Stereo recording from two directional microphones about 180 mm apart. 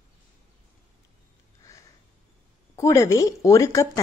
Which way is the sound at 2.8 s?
15° left (ahead or behind).